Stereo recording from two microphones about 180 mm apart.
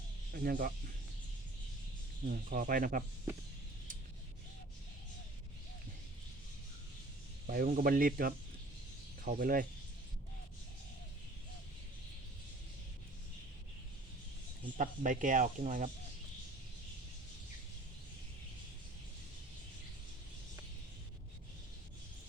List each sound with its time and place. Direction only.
0.3 s speech: 55° right (ahead or behind)
2.2 s speech: 55° right (ahead or behind)
7.4 s speech: 50° right (ahead or behind)
14.8 s speech: 45° right (ahead or behind)